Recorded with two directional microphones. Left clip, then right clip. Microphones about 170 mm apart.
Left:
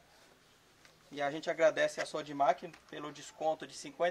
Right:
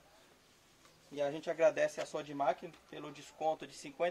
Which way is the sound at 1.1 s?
Centre (ahead or behind).